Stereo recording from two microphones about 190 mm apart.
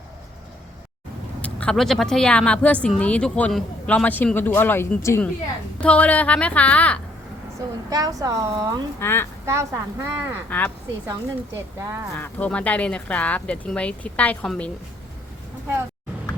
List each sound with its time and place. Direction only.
1.4 s speech: 5° left (ahead or behind)
7.9 s a woman's voice: 20° right (ahead or behind)
9.0 s speech: 10° left (ahead or behind)
9.5 s speech: 15° right (ahead or behind)
12.1 s speech: 10° left (ahead or behind)